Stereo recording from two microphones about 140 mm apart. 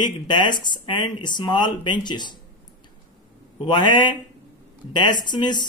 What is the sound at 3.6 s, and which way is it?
Speech, 35° left (ahead or behind).